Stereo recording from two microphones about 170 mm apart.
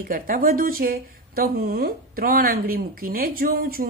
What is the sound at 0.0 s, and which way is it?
Speech, 55° right (ahead or behind).